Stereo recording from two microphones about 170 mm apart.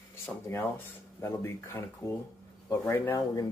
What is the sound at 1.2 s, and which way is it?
Speech, 15° left (ahead or behind).